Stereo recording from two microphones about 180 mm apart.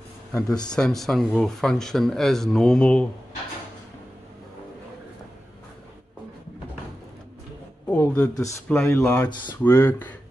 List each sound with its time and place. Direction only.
0.5 s speech: 20° left (ahead or behind)
0.7 s speech: centre (ahead or behind)
7.9 s a man's voice: 10° left (ahead or behind)